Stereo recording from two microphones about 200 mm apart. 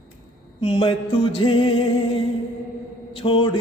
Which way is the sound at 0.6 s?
25° left (ahead or behind).